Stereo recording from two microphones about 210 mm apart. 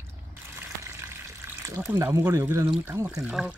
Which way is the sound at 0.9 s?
10° right (ahead or behind).